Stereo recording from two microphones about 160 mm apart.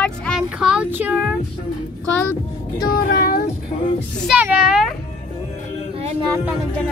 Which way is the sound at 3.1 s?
70° left (ahead or behind).